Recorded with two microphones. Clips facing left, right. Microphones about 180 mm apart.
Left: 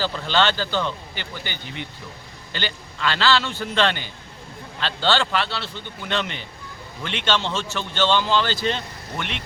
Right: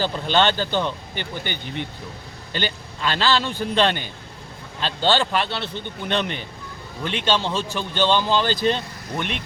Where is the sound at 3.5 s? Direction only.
15° right (ahead or behind).